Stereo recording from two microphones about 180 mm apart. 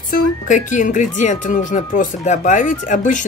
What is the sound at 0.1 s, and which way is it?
A woman's voice, 45° left (ahead or behind).